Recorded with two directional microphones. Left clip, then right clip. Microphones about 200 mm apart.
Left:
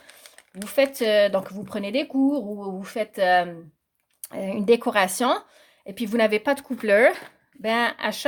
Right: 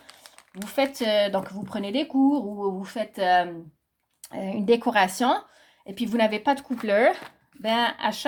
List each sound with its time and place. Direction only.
0.6 s speech: 35° left (ahead or behind)